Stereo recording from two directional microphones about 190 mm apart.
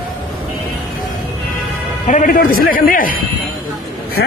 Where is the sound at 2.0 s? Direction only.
40° left (ahead or behind).